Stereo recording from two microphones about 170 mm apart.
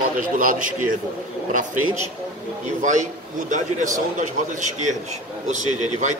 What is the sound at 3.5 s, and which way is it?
A man's voice, 50° right (ahead or behind).